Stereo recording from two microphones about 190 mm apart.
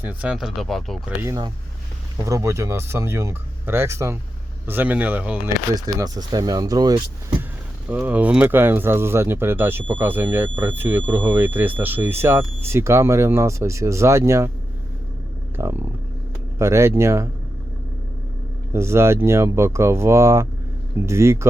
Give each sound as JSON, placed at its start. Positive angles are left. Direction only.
{"t": 0.0, "sound": "speech", "side_deg": -10}
{"t": 1.2, "sound": "speech", "side_deg": -20}
{"t": 5.7, "sound": "speech", "side_deg": -20}
{"t": 7.9, "sound": "speech", "side_deg": -10}
{"t": 15.6, "sound": "speech", "side_deg": -15}
{"t": 18.7, "sound": "speech", "side_deg": -15}